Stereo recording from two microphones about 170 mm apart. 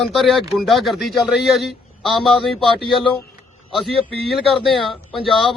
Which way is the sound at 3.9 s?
Centre (ahead or behind).